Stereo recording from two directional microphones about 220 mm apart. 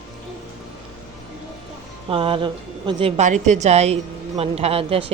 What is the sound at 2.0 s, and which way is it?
Speech, 25° right (ahead or behind).